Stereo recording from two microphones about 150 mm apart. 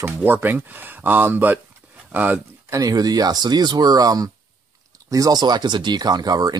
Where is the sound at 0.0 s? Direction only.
15° right (ahead or behind).